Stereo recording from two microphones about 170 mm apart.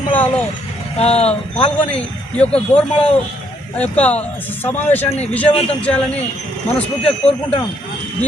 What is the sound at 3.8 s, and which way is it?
A man's voice, 10° left (ahead or behind).